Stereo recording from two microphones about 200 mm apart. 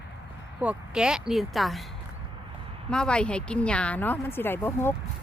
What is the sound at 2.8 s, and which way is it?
A woman's voice, 5° left (ahead or behind).